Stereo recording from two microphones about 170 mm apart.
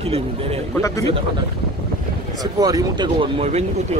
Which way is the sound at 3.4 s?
40° right (ahead or behind).